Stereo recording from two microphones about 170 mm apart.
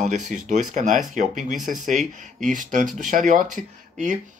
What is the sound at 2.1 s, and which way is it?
Speech, 50° right (ahead or behind).